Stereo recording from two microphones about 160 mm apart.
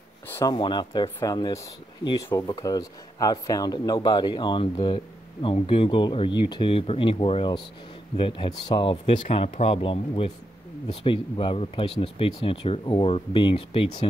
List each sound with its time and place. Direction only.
0.3 s a sound: 15° left (ahead or behind)
0.6 s speech: 30° left (ahead or behind)
9.0 s speech: 40° left (ahead or behind)